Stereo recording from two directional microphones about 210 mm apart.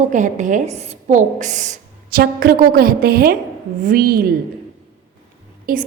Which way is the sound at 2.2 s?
45° right (ahead or behind).